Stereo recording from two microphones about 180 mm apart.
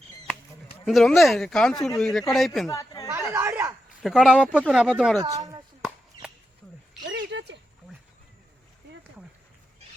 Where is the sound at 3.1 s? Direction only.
15° right (ahead or behind).